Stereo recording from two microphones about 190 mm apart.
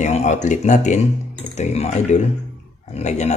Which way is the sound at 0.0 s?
35° left (ahead or behind).